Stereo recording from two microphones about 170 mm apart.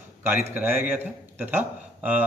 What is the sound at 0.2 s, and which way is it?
Speech, 10° right (ahead or behind).